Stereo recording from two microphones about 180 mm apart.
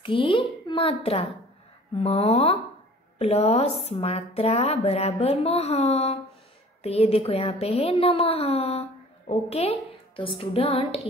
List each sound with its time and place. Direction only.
0.0 s a woman's voice: 30° left (ahead or behind)